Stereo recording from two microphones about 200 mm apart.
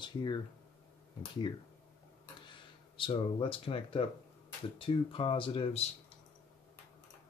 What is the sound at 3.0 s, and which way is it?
Speech, 25° left (ahead or behind).